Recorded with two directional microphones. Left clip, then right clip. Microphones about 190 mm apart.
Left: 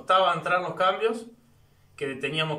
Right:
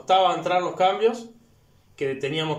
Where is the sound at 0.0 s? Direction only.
25° right (ahead or behind).